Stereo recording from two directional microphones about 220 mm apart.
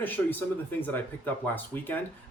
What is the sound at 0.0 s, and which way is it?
Speech, 10° left (ahead or behind).